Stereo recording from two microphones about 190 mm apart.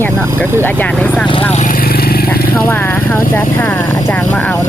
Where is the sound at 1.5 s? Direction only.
40° left (ahead or behind).